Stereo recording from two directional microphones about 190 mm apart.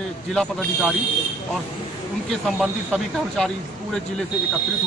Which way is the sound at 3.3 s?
5° left (ahead or behind).